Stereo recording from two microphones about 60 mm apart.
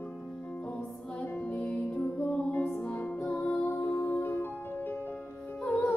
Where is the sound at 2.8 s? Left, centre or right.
Centre.